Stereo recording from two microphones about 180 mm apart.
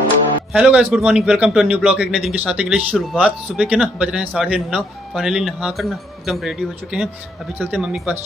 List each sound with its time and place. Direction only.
0.5 s a man's voice: 5° right (ahead or behind)